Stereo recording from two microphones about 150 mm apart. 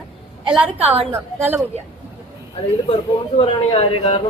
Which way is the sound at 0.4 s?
5° right (ahead or behind).